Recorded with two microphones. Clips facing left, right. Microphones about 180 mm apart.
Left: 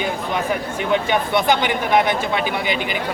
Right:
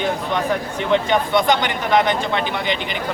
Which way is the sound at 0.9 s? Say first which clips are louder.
Right 2 dB; 10° left (ahead or behind).